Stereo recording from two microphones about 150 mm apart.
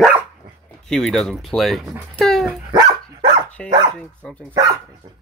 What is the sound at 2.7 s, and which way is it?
Dog, 30° right (ahead or behind).